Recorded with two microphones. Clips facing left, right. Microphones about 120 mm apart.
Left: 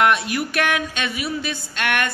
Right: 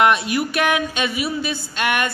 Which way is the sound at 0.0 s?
Centre (ahead or behind).